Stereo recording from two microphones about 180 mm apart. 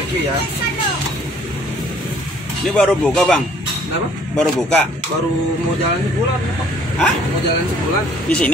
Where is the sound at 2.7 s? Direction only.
5° left (ahead or behind).